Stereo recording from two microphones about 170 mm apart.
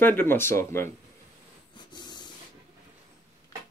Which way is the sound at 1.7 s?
25° left (ahead or behind).